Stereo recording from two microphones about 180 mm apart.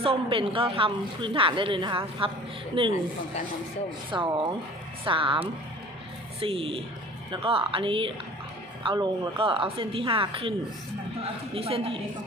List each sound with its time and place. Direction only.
0.0 s speech: 30° right (ahead or behind)
4.1 s speech: 25° right (ahead or behind)
6.4 s a woman's voice: 30° right (ahead or behind)